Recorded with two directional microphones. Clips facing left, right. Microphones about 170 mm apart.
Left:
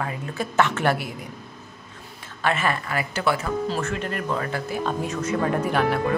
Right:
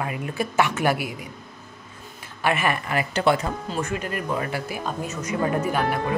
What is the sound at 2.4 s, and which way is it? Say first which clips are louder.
Speech: right 1 dB; 15° right (ahead or behind).